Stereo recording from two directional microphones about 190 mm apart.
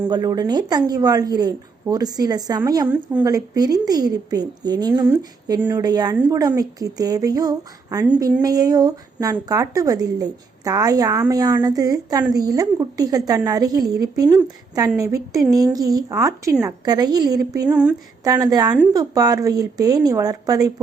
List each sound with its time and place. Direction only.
0.1 s a woman's voice: 20° right (ahead or behind)
3.2 s a woman's voice: 20° right (ahead or behind)
17.7 s a woman's voice: 5° right (ahead or behind)
18.2 s a woman's voice: 20° right (ahead or behind)